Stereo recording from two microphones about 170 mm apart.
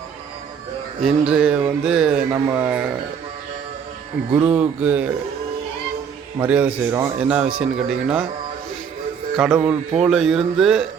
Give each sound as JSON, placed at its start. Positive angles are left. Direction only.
{"t": 1.3, "sound": "music", "side_deg": -5}
{"t": 2.3, "sound": "a man's voice", "side_deg": -10}
{"t": 4.3, "sound": "a man's voice", "side_deg": -15}
{"t": 6.4, "sound": "a man's voice", "side_deg": -10}
{"t": 9.3, "sound": "speech", "side_deg": -5}
{"t": 10.0, "sound": "music", "side_deg": 0}